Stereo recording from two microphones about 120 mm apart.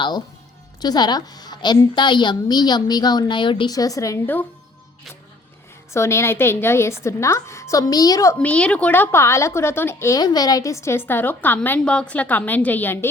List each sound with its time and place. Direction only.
0.8 s a woman's voice: 35° left (ahead or behind)
3.8 s a woman's voice: 30° left (ahead or behind)
5.9 s a woman's voice: 20° left (ahead or behind)
8.4 s speech: 10° left (ahead or behind)